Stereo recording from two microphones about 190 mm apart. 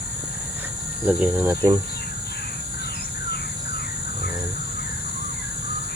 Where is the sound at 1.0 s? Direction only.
10° right (ahead or behind).